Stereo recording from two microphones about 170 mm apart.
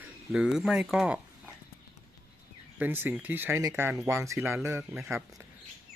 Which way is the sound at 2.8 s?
10° right (ahead or behind).